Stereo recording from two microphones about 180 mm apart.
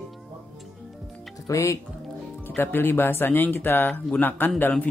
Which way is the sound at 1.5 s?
15° left (ahead or behind).